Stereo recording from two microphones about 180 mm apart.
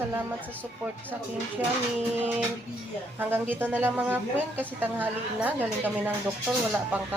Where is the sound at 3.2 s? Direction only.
10° right (ahead or behind).